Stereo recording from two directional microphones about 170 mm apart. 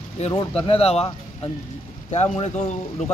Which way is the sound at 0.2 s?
40° left (ahead or behind).